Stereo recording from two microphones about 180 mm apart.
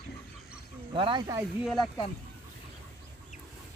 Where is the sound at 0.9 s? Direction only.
25° right (ahead or behind).